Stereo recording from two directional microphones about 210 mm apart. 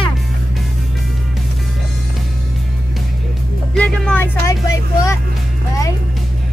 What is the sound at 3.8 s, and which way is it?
Music, 5° left (ahead or behind).